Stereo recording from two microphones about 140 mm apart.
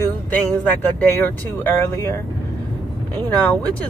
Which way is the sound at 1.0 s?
15° left (ahead or behind).